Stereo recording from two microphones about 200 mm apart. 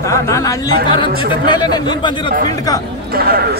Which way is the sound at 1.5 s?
20° left (ahead or behind).